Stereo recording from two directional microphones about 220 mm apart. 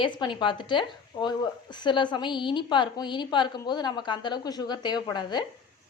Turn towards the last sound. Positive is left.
turn(degrees=20)  # may be behind; listen again after turning